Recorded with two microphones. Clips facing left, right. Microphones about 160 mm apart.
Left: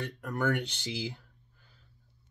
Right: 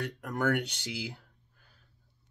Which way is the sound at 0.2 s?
15° right (ahead or behind).